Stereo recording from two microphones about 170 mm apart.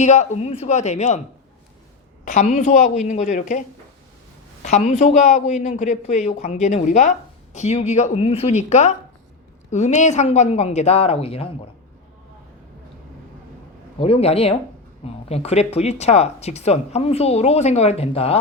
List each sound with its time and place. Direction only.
0.0 s a man's voice: 40° left (ahead or behind)
2.2 s a man's voice: 45° left (ahead or behind)
4.6 s a man's voice: 45° left (ahead or behind)
14.0 s speech: 35° left (ahead or behind)